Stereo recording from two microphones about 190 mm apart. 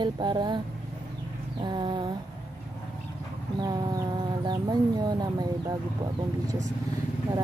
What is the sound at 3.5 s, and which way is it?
Speech, 20° right (ahead or behind).